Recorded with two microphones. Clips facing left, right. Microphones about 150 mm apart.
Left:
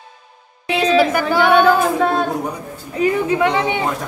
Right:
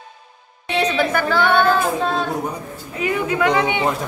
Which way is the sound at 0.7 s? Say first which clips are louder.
Left 4 dB; 10° left (ahead or behind).